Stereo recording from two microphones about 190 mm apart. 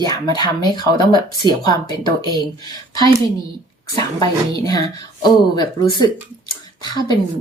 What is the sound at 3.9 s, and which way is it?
Speech, 20° left (ahead or behind).